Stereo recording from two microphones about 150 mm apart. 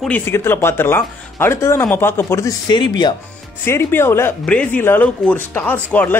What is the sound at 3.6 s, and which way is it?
Speech, 15° left (ahead or behind).